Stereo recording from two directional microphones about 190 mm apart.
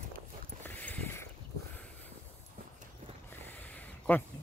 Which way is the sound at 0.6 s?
10° left (ahead or behind).